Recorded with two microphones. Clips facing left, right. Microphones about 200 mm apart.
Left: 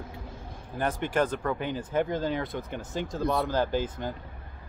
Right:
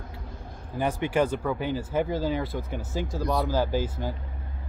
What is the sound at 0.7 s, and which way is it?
Speech, 10° right (ahead or behind).